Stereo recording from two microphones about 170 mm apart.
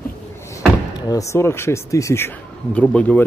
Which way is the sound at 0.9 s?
25° left (ahead or behind).